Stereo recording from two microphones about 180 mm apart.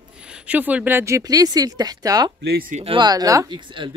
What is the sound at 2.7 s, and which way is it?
Speech, 30° right (ahead or behind).